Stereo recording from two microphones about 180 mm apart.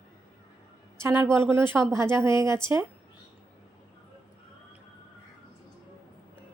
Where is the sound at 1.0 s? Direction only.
15° right (ahead or behind).